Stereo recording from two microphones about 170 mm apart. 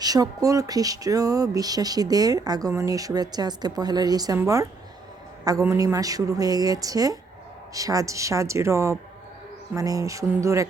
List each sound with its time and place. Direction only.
0.0 s a woman's voice: 20° right (ahead or behind)